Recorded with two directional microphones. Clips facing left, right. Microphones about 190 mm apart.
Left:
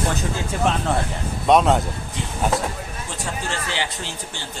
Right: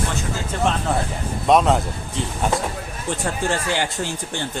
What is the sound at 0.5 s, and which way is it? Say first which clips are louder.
Speech: right 1 dB; 10° left (ahead or behind).